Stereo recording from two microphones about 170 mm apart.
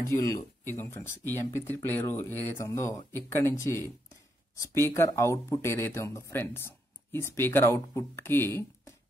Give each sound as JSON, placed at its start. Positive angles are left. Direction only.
{"t": 0.1, "sound": "speech", "side_deg": 15}